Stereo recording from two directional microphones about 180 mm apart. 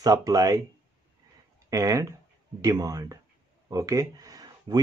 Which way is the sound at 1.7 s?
15° right (ahead or behind).